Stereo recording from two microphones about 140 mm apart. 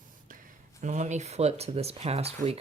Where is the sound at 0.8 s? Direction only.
60° right (ahead or behind).